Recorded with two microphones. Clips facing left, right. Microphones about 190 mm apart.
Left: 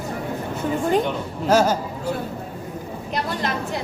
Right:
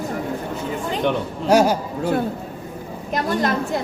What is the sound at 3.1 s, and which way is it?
Speech, 45° right (ahead or behind).